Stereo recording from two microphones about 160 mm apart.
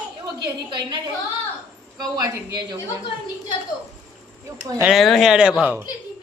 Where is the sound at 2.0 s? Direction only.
25° right (ahead or behind).